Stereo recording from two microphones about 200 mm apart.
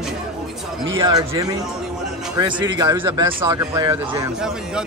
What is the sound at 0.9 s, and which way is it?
Speech, 20° right (ahead or behind).